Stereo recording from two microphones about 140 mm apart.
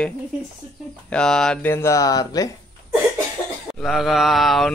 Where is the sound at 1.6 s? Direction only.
20° left (ahead or behind).